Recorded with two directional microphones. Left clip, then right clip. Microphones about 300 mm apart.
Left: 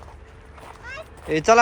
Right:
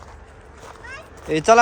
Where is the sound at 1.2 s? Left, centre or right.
Centre.